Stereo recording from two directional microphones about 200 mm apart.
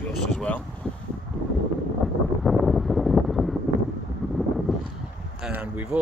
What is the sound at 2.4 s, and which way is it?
Wind noise, centre (ahead or behind).